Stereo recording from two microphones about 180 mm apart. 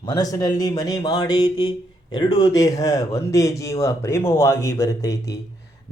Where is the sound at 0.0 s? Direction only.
20° left (ahead or behind).